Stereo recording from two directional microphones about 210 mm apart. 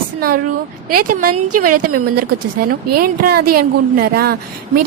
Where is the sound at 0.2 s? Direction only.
45° right (ahead or behind).